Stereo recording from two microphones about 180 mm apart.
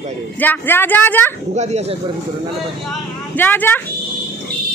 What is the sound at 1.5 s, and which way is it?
Speech, 40° right (ahead or behind).